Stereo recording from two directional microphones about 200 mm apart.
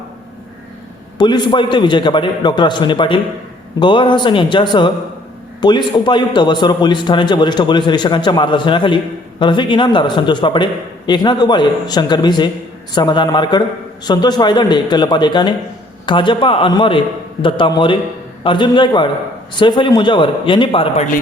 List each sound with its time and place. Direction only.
1.2 s a man's voice: 25° left (ahead or behind)